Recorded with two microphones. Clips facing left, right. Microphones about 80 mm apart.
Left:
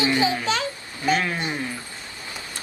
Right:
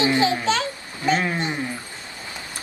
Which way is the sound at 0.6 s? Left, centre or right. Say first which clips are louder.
Right 2 dB; right.